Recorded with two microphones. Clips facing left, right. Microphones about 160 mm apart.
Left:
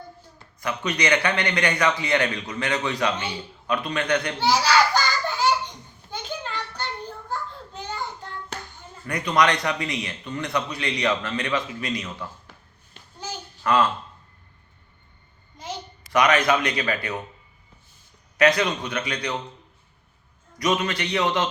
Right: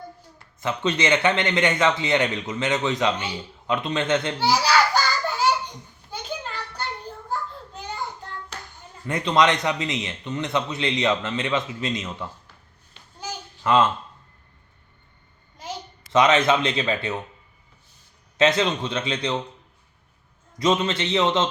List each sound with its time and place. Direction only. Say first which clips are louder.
0.6 s a man's voice: right 2 dB; 25° right (ahead or behind)
4.4 s a child's voice: even; 10° right (ahead or behind)
6.1 s children playing: even; 5° right (ahead or behind)
7.3 s a sound: right 4 dB; 10° right (ahead or behind)
9.0 s a man's voice: right 2 dB; 25° right (ahead or behind)
13.2 s a sound: right 1 dB; 20° right (ahead or behind)
16.1 s a man's voice: right 2 dB; 25° right (ahead or behind)
18.3 s a man's voice: even; 25° right (ahead or behind)
20.6 s a man's voice: right 2 dB; 25° right (ahead or behind)